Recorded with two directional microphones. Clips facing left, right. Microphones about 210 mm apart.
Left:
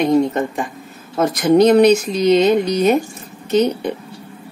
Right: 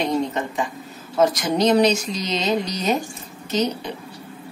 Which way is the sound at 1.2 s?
55° left (ahead or behind).